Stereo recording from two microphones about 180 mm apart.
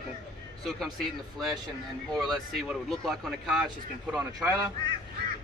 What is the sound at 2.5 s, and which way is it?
Speech, centre (ahead or behind).